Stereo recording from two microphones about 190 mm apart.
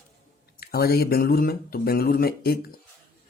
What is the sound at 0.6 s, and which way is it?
Speech, 55° left (ahead or behind).